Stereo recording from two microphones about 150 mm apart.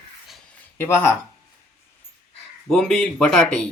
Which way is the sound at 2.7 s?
5° left (ahead or behind).